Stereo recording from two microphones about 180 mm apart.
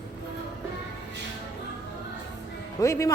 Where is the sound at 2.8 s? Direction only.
15° left (ahead or behind).